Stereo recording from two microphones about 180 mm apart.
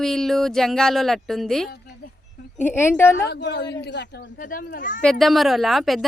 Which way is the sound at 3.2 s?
75° left (ahead or behind).